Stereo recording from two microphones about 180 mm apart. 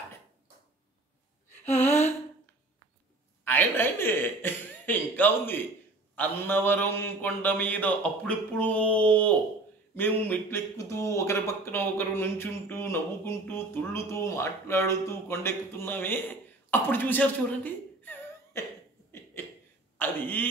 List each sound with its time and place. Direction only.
1.8 s a sound: 40° left (ahead or behind)
3.4 s speech: 10° left (ahead or behind)
17.6 s laughter: 10° left (ahead or behind)
20.0 s speech: 10° left (ahead or behind)